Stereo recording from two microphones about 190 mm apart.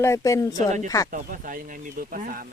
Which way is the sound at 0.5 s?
40° right (ahead or behind).